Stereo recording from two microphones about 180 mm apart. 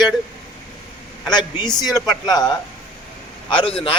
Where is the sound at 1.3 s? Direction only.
25° left (ahead or behind).